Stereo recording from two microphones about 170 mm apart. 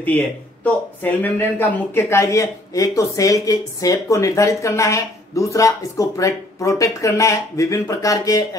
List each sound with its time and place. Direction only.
0.7 s speech: 10° left (ahead or behind)